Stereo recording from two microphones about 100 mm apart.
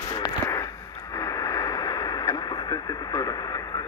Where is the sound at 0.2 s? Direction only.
40° left (ahead or behind).